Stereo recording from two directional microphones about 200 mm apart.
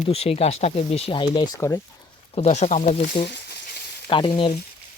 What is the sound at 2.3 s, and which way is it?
Speech, 35° left (ahead or behind).